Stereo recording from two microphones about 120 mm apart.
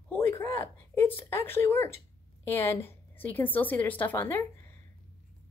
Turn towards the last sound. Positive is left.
turn(degrees=20)  # may be behind; listen again after turning